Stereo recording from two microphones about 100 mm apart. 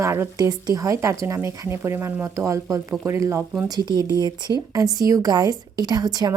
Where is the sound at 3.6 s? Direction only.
40° right (ahead or behind).